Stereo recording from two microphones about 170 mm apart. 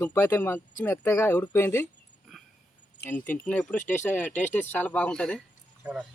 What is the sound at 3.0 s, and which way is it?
Speech, 10° left (ahead or behind).